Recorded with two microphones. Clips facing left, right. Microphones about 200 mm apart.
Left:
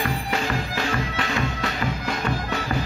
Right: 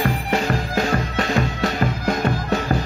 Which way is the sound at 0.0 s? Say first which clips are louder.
Right 4 dB; 40° right (ahead or behind).